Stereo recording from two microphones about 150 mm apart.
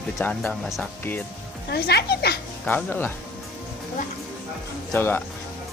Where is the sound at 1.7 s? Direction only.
90° left.